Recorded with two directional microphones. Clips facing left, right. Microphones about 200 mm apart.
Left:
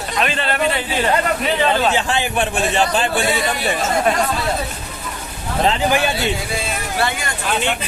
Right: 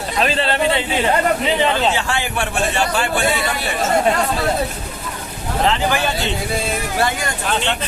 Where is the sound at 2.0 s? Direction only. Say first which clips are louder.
Left 2 dB; 20° left (ahead or behind).